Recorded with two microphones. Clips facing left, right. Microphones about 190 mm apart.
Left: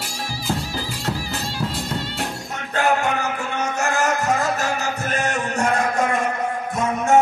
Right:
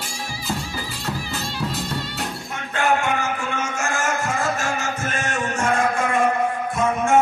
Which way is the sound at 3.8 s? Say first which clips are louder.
Left 4 dB; 40° left (ahead or behind).